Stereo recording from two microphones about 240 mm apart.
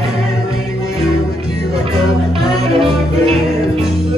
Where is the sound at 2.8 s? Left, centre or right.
Right.